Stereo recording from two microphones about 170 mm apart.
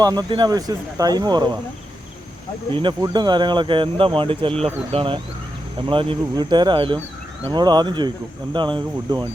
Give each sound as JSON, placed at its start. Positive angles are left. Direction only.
{"t": 0.0, "sound": "speech", "side_deg": -25}
{"t": 2.7, "sound": "speech", "side_deg": -25}